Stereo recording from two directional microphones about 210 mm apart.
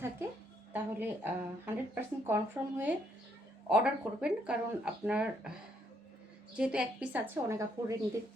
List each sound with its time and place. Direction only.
0.7 s speech: 10° right (ahead or behind)
6.6 s speech: 5° right (ahead or behind)